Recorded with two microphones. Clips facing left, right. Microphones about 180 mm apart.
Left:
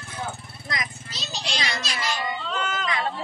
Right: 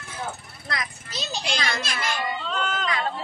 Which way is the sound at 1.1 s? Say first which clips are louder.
Right 6 dB; 55° right (ahead or behind).